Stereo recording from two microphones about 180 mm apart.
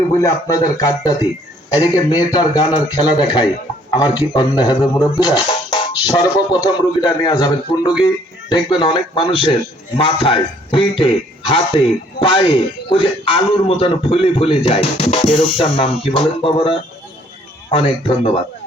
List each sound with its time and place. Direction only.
0.2 s speech: 20° left (ahead or behind)